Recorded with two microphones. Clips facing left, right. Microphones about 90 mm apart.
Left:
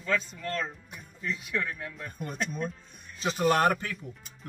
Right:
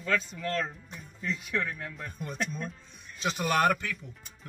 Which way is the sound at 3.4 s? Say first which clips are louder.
Left 2 dB; 35° left (ahead or behind).